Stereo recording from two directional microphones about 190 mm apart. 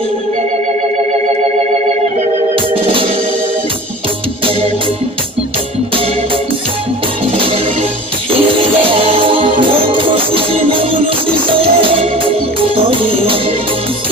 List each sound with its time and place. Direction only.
8.3 s music: 30° right (ahead or behind)